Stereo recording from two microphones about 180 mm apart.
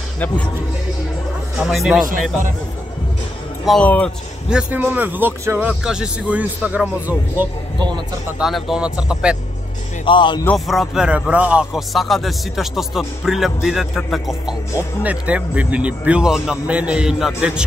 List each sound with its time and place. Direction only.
1.6 s a man's voice: centre (ahead or behind)
3.6 s a man's voice: 5° left (ahead or behind)
4.5 s a man's voice: 5° right (ahead or behind)
10.0 s speech: 25° left (ahead or behind)
10.4 s a man's voice: centre (ahead or behind)